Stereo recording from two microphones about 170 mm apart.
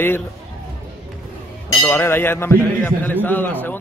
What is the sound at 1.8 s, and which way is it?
Speech, 15° left (ahead or behind).